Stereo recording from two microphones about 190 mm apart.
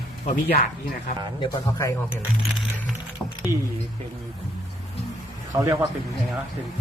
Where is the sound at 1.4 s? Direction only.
15° left (ahead or behind).